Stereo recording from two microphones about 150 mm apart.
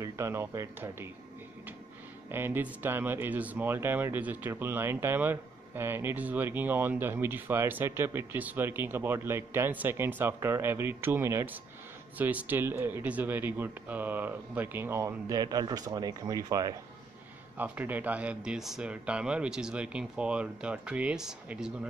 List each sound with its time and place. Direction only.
0.0 s speech: 20° right (ahead or behind)
2.3 s speech: 15° right (ahead or behind)
17.6 s speech: 10° right (ahead or behind)